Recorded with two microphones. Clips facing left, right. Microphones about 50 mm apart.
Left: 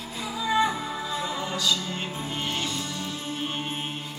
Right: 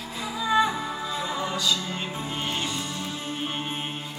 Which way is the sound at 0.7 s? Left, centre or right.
Centre.